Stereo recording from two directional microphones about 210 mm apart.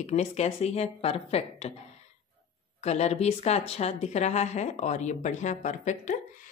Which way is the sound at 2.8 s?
30° left (ahead or behind).